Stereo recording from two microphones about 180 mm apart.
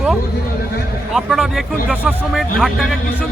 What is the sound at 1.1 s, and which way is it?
Speech, centre (ahead or behind).